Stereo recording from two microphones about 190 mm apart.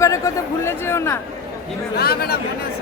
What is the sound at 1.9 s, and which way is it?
Speech, 55° left (ahead or behind).